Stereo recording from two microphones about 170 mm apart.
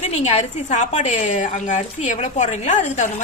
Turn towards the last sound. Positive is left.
turn(degrees=45)  # may be behind; listen again after turning